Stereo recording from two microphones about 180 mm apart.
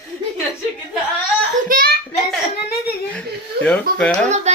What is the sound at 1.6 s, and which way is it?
Speech, 50° right (ahead or behind).